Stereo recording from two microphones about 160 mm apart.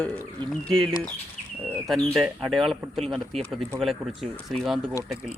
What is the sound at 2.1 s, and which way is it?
Speech, centre (ahead or behind).